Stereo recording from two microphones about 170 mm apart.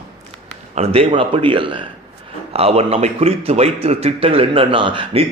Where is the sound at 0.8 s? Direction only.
35° right (ahead or behind).